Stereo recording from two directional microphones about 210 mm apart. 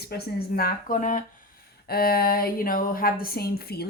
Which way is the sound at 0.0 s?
50° left (ahead or behind).